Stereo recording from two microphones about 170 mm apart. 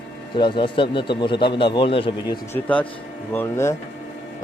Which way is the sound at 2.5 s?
10° left (ahead or behind).